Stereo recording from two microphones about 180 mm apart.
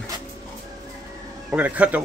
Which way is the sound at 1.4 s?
10° right (ahead or behind).